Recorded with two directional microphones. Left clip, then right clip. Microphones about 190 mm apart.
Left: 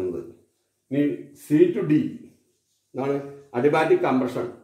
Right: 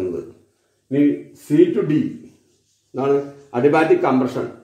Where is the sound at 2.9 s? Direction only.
15° right (ahead or behind).